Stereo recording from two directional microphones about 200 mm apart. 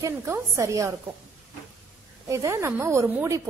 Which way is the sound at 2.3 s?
15° right (ahead or behind).